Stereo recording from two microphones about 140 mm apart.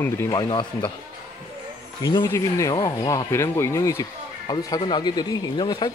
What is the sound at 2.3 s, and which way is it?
Speech, 20° left (ahead or behind).